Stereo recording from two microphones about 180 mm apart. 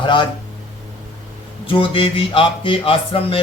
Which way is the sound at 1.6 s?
30° left (ahead or behind).